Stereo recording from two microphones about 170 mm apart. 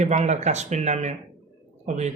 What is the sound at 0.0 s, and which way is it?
A man's voice, 45° right (ahead or behind).